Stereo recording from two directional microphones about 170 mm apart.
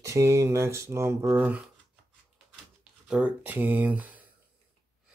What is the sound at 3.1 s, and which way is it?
Speech, 10° right (ahead or behind).